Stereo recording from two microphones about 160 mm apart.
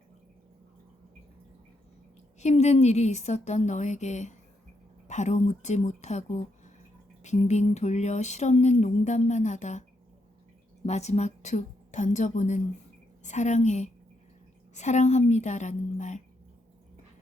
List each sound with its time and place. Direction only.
2.4 s speech: 45° left (ahead or behind)
10.8 s speech: 45° left (ahead or behind)